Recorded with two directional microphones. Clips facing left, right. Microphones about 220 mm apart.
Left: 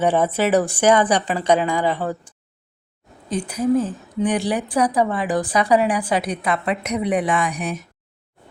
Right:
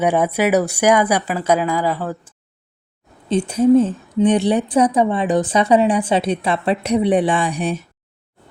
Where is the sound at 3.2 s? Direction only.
25° right (ahead or behind).